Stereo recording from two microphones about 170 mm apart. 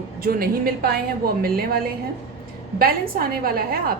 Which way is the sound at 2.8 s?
60° right (ahead or behind).